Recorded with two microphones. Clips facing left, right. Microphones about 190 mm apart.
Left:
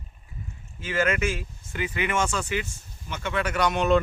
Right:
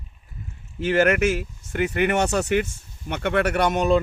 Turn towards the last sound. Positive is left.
turn(degrees=-50)  # may be behind; listen again after turning